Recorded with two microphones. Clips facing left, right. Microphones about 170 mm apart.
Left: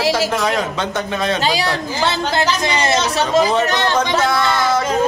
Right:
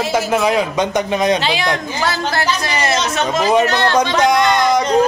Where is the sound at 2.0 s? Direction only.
20° left (ahead or behind).